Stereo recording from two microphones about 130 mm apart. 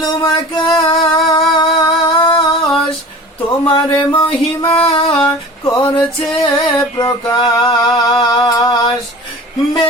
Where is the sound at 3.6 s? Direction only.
40° left (ahead or behind).